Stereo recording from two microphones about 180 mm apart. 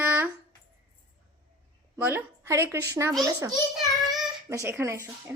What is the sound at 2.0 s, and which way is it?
A woman's voice, 10° right (ahead or behind).